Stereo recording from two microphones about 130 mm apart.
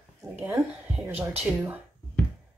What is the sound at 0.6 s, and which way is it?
Speech, centre (ahead or behind).